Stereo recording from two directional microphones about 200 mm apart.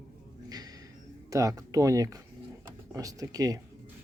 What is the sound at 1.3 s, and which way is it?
Speech, 15° right (ahead or behind).